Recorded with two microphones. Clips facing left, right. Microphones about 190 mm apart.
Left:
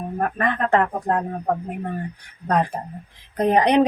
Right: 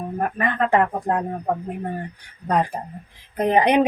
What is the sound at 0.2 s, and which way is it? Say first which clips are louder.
Speech: even; 10° right (ahead or behind).